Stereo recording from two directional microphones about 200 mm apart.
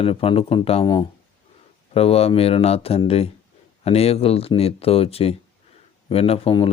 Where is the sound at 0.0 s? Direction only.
30° left (ahead or behind).